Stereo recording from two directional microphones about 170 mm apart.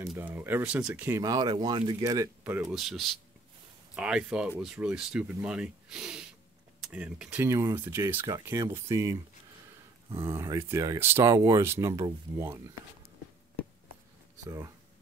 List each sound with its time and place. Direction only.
0.1 s speech: 10° right (ahead or behind)
10.1 s speech: 15° right (ahead or behind)